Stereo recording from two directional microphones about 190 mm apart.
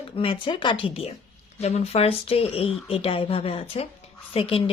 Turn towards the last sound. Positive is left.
turn(degrees=30)  # may be behind; listen again after turning